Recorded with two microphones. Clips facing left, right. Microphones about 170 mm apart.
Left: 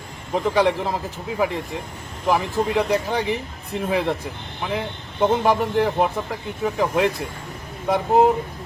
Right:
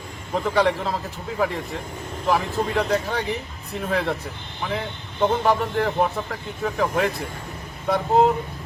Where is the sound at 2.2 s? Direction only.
10° left (ahead or behind).